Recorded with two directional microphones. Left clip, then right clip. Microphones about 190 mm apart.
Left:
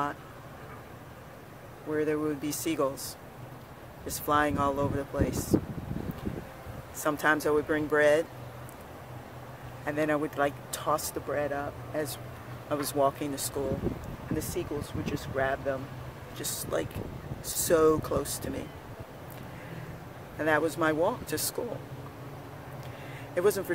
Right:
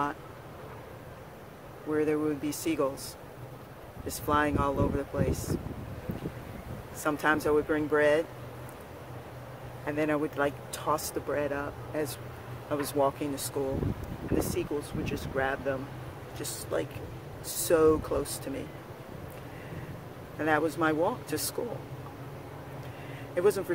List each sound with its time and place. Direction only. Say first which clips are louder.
1.9 s speech: right 1 dB; 5° left (ahead or behind)
4.3 s speech: left 1 dB; 10° left (ahead or behind)
7.0 s speech: left 1 dB; 10° left (ahead or behind)
9.8 s speech: left 1 dB; 10° left (ahead or behind)
14.4 s speech: right 2 dB; centre (ahead or behind)
16.7 s speech: even; 15° left (ahead or behind)
20.3 s speech: left 1 dB; 10° left (ahead or behind)
23.3 s speech: even; 15° left (ahead or behind)